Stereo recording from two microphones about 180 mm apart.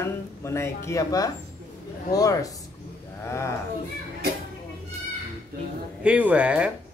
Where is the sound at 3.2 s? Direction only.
15° left (ahead or behind).